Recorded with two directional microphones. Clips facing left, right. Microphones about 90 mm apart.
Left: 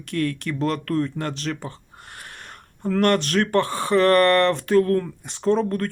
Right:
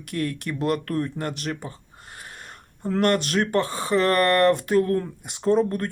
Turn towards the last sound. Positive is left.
turn(degrees=-15)  # may be behind; listen again after turning